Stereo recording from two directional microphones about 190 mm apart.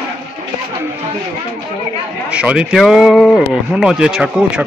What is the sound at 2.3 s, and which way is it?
Speech, 5° right (ahead or behind).